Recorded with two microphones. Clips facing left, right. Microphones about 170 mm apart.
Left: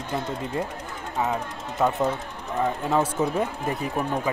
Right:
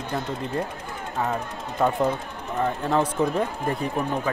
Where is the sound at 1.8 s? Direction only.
Centre (ahead or behind).